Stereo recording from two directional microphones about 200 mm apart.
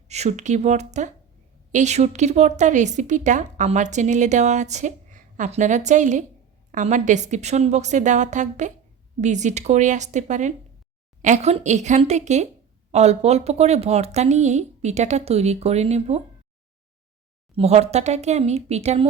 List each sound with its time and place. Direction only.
0.1 s a woman's voice: 35° right (ahead or behind)
17.5 s a woman's voice: 30° right (ahead or behind)